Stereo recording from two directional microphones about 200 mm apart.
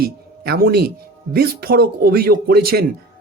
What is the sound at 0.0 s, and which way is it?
Speech, 50° right (ahead or behind).